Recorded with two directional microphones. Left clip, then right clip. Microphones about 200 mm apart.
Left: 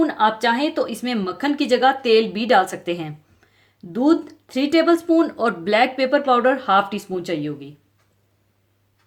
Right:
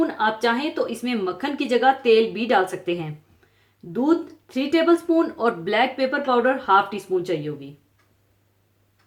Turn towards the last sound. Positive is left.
turn(degrees=45)  # may be behind; listen again after turning